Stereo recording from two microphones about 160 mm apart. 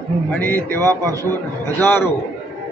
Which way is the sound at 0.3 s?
10° left (ahead or behind).